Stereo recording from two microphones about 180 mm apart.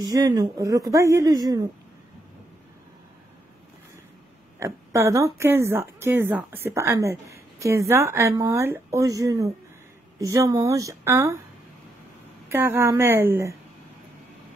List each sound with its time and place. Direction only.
0.0 s a woman's voice: 20° right (ahead or behind)
4.6 s a woman's voice: 15° right (ahead or behind)
12.4 s speech: 10° right (ahead or behind)